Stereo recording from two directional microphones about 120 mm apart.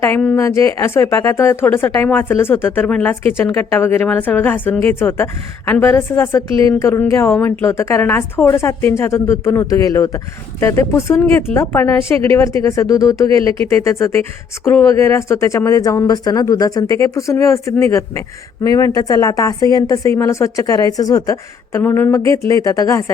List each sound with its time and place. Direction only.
0.3 s a woman's voice: 25° left (ahead or behind)
13.3 s speech: 50° right (ahead or behind)
13.7 s speech: 25° left (ahead or behind)
21.8 s speech: 15° left (ahead or behind)